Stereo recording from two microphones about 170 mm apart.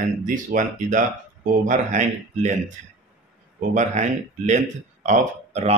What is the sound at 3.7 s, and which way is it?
Speech, 45° right (ahead or behind).